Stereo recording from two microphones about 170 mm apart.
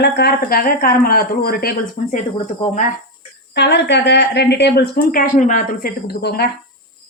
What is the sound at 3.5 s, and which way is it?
A woman's voice, 90° left.